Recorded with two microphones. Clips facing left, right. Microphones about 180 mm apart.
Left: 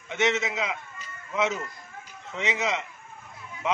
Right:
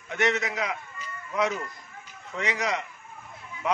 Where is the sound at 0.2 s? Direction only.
Centre (ahead or behind).